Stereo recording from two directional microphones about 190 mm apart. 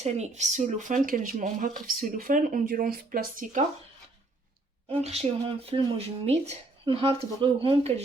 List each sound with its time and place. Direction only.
0.0 s speech: 35° right (ahead or behind)
4.9 s speech: 35° right (ahead or behind)